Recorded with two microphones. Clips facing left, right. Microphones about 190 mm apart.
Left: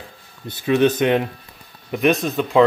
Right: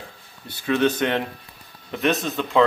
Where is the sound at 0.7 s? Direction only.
15° left (ahead or behind).